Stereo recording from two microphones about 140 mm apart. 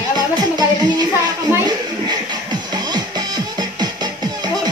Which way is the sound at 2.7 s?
30° right (ahead or behind).